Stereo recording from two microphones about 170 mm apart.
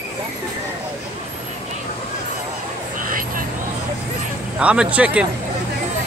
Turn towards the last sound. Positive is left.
turn(degrees=-5)  # may be behind; listen again after turning